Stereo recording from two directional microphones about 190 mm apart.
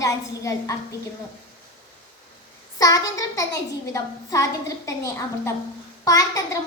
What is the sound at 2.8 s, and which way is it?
A woman's voice, 20° left (ahead or behind).